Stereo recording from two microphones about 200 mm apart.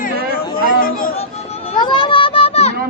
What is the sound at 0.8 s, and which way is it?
Music, 45° left (ahead or behind).